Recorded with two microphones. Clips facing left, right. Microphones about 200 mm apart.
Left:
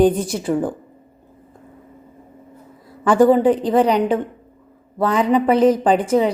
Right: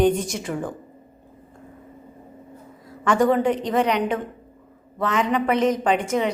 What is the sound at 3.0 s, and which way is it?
Speech, 30° left (ahead or behind).